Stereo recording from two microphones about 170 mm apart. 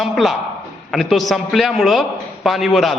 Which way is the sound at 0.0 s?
Centre (ahead or behind).